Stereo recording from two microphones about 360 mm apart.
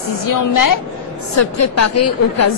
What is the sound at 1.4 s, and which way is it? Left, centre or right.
A woman's voice, left.